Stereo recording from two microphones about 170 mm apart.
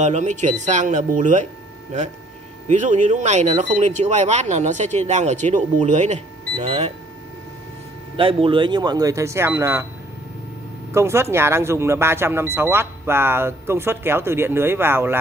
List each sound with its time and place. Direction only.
0.0 s speech: 45° right (ahead or behind)
2.7 s speech: 45° right (ahead or behind)
8.2 s speech: 30° right (ahead or behind); by 9.8 s 15° right (ahead or behind)
10.9 s speech: 15° right (ahead or behind)